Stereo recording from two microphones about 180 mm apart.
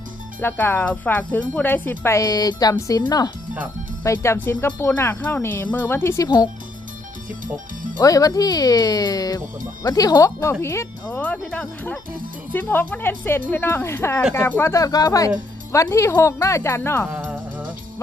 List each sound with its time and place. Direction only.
0.3 s speech: 10° left (ahead or behind)
7.9 s speech: 20° left (ahead or behind)
17.2 s music: 10° right (ahead or behind)